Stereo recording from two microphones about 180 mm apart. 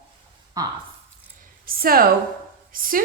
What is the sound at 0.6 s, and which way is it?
Speech, 20° right (ahead or behind).